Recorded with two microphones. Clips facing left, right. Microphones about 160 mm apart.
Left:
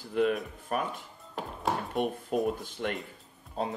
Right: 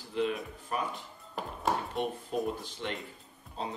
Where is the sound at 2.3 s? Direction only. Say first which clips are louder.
Left 5 dB; 55° left (ahead or behind).